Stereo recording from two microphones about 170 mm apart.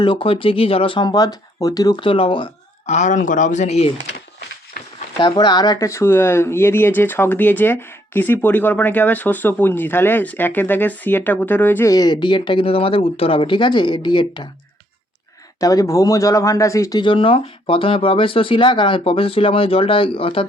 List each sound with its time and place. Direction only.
0.0 s speech: 30° left (ahead or behind)
2.9 s speech: 45° left (ahead or behind)
4.8 s a sound: 70° left (ahead or behind)
5.2 s speech: 25° left (ahead or behind)
15.6 s speech: 20° left (ahead or behind)